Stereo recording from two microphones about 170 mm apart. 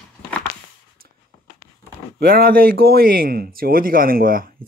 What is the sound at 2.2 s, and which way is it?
Speech, 60° right (ahead or behind).